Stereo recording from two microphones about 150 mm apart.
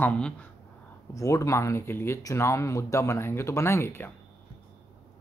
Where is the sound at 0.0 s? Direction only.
10° left (ahead or behind).